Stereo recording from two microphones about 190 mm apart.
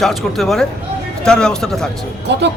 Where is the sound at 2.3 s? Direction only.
65° right (ahead or behind).